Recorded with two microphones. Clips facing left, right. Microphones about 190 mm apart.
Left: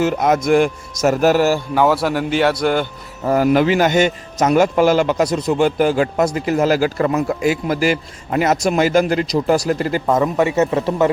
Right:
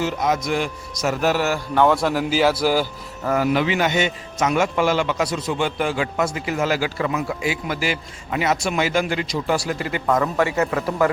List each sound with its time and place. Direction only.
0.0 s speech: 50° left (ahead or behind)
1.7 s speech: 5° left (ahead or behind)
3.3 s a man's voice: 45° left (ahead or behind)
10.1 s a man's voice: 25° left (ahead or behind)